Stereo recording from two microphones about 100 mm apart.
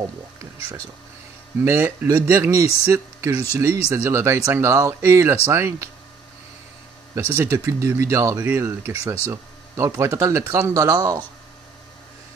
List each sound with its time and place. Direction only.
1.6 s speech: 25° right (ahead or behind)
7.2 s speech: 25° right (ahead or behind)